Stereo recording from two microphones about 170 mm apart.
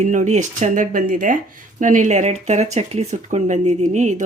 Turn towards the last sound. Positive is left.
turn(degrees=-45)  # may be behind; listen again after turning